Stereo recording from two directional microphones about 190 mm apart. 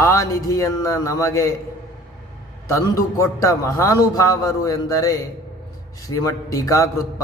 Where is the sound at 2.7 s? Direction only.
15° left (ahead or behind).